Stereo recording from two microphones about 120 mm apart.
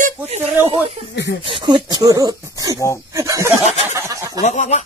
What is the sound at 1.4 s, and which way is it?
Speech, 40° right (ahead or behind).